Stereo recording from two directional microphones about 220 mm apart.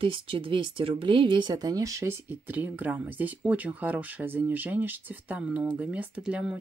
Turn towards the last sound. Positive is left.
turn(degrees=-5)  # may be behind; listen again after turning